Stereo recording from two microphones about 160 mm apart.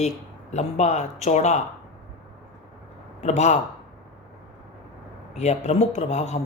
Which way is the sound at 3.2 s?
45° left (ahead or behind).